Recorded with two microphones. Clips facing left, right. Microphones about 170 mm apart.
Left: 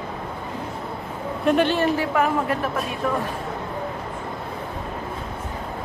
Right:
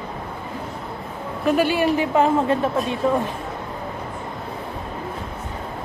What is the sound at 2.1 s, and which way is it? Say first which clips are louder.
Speech: right 4 dB; 25° right (ahead or behind).